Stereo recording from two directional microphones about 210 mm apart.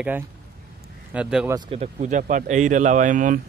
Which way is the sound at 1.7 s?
30° right (ahead or behind).